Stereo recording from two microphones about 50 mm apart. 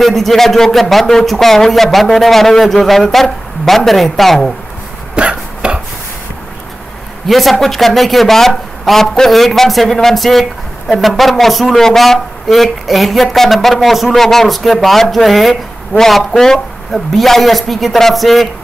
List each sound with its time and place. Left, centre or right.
0.0 s speech: centre
5.1 s a sound: right
7.2 s speech: centre